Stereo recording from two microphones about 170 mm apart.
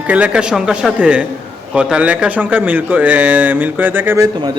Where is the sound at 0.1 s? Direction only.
5° right (ahead or behind).